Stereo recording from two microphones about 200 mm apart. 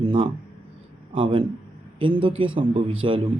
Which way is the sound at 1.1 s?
25° right (ahead or behind).